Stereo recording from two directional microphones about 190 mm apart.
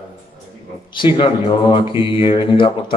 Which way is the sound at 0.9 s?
25° left (ahead or behind).